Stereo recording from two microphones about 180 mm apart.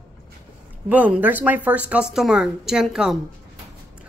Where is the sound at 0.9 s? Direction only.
10° right (ahead or behind).